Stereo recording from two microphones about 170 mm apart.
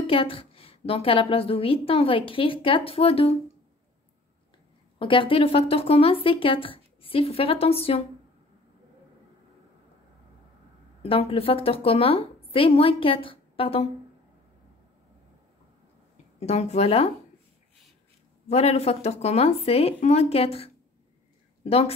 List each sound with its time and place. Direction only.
0.0 s a woman's voice: 35° left (ahead or behind)
4.9 s a woman's voice: 30° left (ahead or behind)
11.0 s a woman's voice: 35° left (ahead or behind)
16.3 s a woman's voice: 40° left (ahead or behind)
18.5 s a woman's voice: 40° left (ahead or behind)